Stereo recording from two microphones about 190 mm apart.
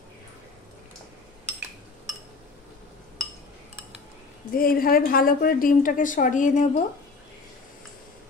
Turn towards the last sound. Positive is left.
turn(degrees=40)  # may be behind; listen again after turning